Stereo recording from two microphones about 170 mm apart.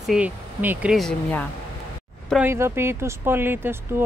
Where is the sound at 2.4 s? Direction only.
15° right (ahead or behind).